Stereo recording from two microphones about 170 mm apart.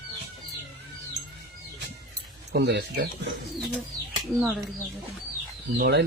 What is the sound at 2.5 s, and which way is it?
Speech, 80° right.